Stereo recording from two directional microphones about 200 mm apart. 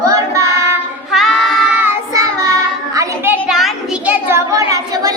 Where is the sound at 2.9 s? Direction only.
10° right (ahead or behind).